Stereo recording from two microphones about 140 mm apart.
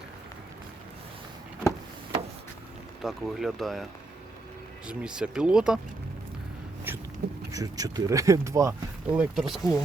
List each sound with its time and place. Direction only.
3.0 s speech: centre (ahead or behind)
4.9 s speech: 5° right (ahead or behind)
7.5 s speech: 25° right (ahead or behind)
9.0 s speech: 10° right (ahead or behind)